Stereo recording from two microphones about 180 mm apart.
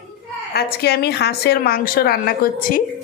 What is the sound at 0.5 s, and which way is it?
A woman's voice, 60° left (ahead or behind).